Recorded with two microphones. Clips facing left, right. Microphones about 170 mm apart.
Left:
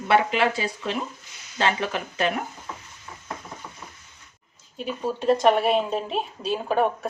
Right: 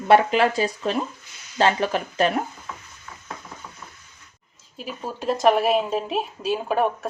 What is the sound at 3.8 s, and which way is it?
Frying, 30° left (ahead or behind).